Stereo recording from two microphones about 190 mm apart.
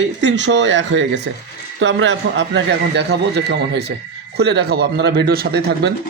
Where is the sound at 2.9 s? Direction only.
60° right (ahead or behind).